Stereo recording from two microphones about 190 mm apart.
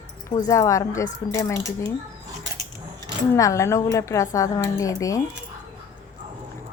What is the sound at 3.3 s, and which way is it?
Speech, 15° left (ahead or behind).